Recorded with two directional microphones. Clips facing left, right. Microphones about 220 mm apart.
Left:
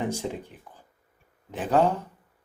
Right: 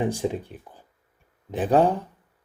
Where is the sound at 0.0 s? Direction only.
15° right (ahead or behind).